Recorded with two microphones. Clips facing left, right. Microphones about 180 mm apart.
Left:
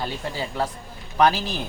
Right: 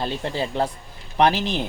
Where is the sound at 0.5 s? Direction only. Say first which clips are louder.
Right 3 dB; 25° right (ahead or behind).